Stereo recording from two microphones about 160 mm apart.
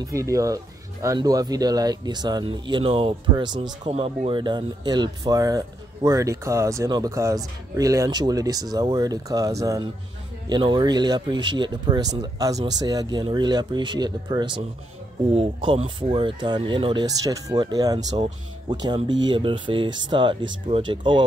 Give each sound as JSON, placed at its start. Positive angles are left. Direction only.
{"t": 0.0, "sound": "speech", "side_deg": -20}
{"t": 3.9, "sound": "speech", "side_deg": -40}